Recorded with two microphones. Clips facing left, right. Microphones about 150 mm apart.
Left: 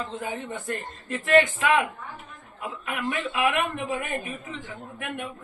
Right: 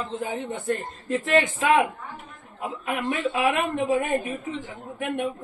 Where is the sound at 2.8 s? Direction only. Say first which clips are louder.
Right 3 dB; 30° right (ahead or behind).